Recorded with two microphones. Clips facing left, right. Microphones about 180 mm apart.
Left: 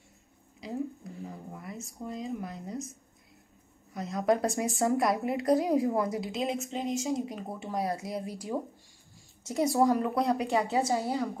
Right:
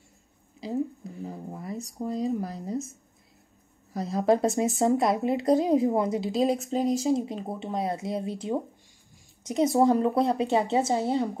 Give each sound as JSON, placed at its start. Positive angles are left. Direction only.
{"t": 1.2, "sound": "a sound", "side_deg": -30}
{"t": 2.0, "sound": "speech", "side_deg": -40}
{"t": 6.7, "sound": "speech", "side_deg": -40}